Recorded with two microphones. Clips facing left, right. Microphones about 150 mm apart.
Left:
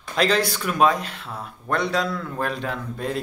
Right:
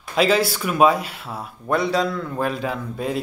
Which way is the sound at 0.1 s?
5° right (ahead or behind).